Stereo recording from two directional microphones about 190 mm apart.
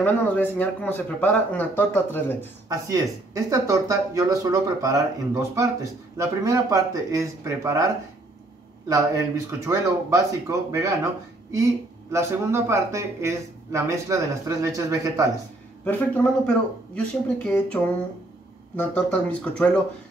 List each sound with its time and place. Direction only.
0.0 s speech: 10° left (ahead or behind)
3.4 s speech: 20° right (ahead or behind)
12.1 s speech: 15° right (ahead or behind)
15.8 s speech: 10° left (ahead or behind)
18.8 s speech: 5° left (ahead or behind)